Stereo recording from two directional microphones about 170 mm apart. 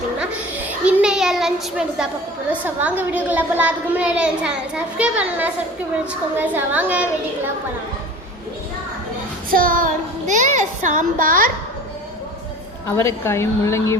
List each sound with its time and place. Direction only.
0.9 s child singing: 5° right (ahead or behind)
2.5 s a child's voice: 10° right (ahead or behind)
9.5 s child singing: 55° right (ahead or behind)
13.0 s speech: 15° left (ahead or behind)